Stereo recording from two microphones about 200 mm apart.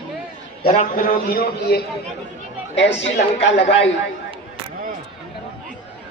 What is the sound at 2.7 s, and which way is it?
A man's voice, 65° left (ahead or behind).